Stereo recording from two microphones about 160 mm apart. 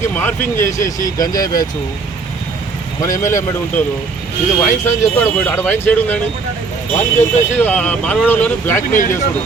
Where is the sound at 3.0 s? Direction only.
20° left (ahead or behind).